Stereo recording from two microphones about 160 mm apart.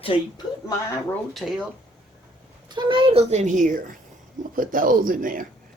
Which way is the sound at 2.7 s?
30° right (ahead or behind).